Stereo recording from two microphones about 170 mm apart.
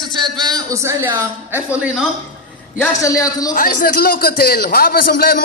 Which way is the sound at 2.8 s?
20° left (ahead or behind).